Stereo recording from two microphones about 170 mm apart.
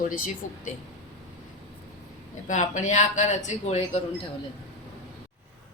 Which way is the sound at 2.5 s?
45° left (ahead or behind).